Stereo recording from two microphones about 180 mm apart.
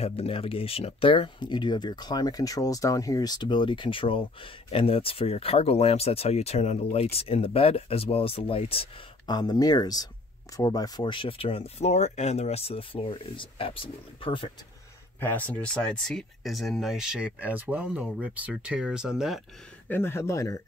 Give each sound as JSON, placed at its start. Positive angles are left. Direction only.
{"t": 0.0, "sound": "speech", "side_deg": 35}
{"t": 15.1, "sound": "speech", "side_deg": 10}
{"t": 19.9, "sound": "speech", "side_deg": 15}